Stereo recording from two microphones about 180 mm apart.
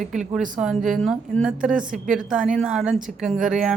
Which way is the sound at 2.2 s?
5° right (ahead or behind).